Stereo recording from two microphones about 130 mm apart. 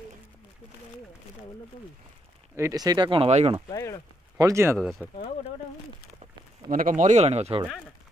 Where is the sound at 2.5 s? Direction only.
25° right (ahead or behind); by 3.6 s 50° right (ahead or behind).